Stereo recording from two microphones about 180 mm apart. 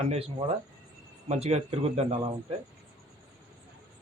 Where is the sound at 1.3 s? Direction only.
35° right (ahead or behind).